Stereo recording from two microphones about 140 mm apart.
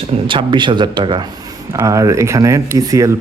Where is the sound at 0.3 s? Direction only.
35° right (ahead or behind).